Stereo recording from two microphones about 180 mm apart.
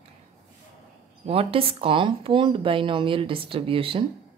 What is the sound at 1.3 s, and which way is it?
Speech, 30° right (ahead or behind).